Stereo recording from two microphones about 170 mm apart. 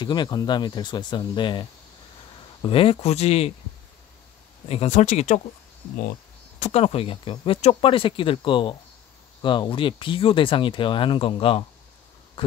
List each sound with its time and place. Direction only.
0.0 s speech: 25° left (ahead or behind)
4.6 s speech: 40° left (ahead or behind)
6.6 s speech: 35° left (ahead or behind)